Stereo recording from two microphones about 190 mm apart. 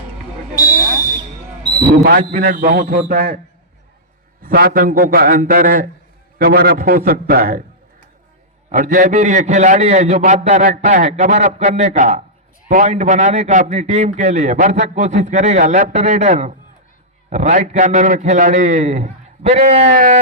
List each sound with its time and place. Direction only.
1.8 s a man's voice: 45° right (ahead or behind)
4.4 s a man's voice: 50° right (ahead or behind)
8.7 s a man's voice: 45° right (ahead or behind)